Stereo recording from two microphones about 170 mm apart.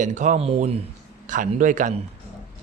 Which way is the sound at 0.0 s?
45° right (ahead or behind).